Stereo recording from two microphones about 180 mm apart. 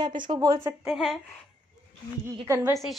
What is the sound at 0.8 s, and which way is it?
Speech, centre (ahead or behind).